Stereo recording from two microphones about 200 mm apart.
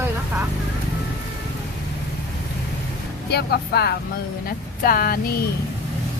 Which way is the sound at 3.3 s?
55° left (ahead or behind).